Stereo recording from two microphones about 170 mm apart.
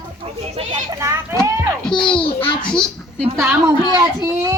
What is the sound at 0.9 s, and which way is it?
Children playing, 15° right (ahead or behind).